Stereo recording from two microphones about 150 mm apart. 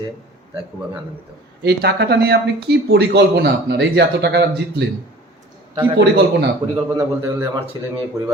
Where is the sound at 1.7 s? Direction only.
90° right.